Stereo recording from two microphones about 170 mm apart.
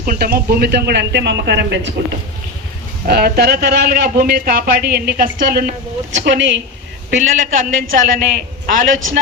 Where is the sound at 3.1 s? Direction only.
65° right (ahead or behind); by 6.6 s 90° right.